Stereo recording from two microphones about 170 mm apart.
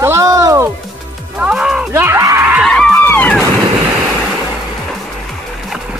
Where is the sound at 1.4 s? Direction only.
5° right (ahead or behind).